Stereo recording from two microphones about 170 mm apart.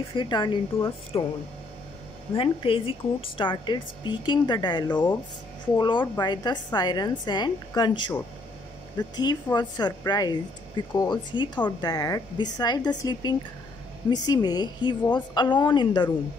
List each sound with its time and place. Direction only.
0.1 s speech: 25° left (ahead or behind)
2.3 s speech: 30° left (ahead or behind)